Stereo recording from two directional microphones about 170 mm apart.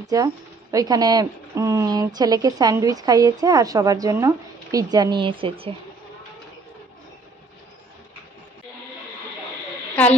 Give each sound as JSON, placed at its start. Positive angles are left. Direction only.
{"t": 0.0, "sound": "speech", "side_deg": -20}